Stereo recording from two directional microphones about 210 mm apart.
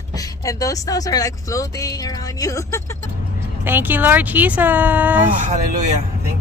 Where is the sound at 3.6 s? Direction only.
10° right (ahead or behind).